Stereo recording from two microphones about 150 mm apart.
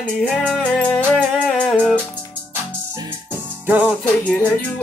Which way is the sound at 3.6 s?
10° right (ahead or behind).